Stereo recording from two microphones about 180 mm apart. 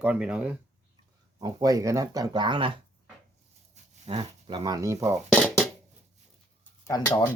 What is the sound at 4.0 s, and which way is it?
Dog, 35° right (ahead or behind).